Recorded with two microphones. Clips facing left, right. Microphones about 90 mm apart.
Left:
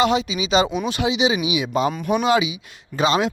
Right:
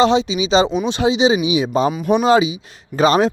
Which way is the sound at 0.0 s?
30° right (ahead or behind).